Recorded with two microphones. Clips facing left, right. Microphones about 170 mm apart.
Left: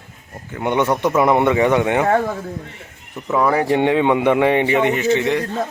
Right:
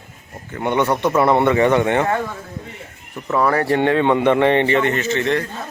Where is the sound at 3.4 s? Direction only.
15° left (ahead or behind).